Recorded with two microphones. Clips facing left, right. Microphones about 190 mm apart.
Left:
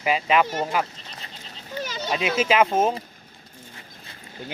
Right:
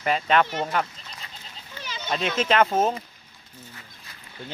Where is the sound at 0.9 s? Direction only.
35° left (ahead or behind).